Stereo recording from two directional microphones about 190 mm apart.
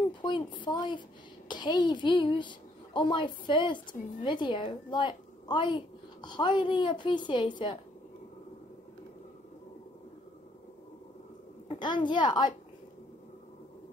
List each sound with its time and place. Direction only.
0.2 s a woman's voice: 25° left (ahead or behind)
11.7 s a woman's voice: 25° left (ahead or behind)